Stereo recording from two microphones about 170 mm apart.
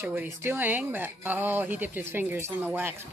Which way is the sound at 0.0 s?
10° right (ahead or behind).